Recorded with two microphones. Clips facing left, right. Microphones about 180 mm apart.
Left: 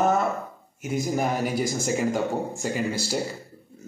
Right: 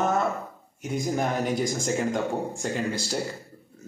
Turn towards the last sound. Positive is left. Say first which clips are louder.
# left 1 dB
turn(degrees=10)  # may be behind; listen again after turning